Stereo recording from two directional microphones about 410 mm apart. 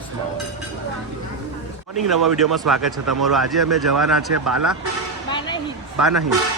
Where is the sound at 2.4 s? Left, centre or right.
Centre.